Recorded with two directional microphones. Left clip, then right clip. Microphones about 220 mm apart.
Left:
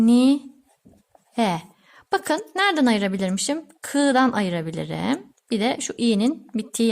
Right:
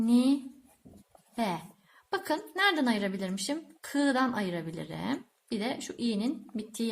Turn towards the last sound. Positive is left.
turn(degrees=45)  # may be behind; listen again after turning